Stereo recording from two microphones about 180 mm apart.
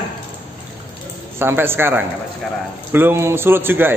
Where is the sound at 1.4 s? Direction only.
15° right (ahead or behind).